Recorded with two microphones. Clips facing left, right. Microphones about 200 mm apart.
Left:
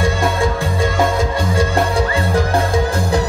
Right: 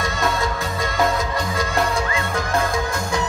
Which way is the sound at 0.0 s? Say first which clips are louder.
Left 6 dB; 30° left (ahead or behind).